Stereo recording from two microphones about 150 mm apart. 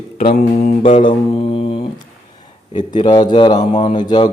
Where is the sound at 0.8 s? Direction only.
35° left (ahead or behind).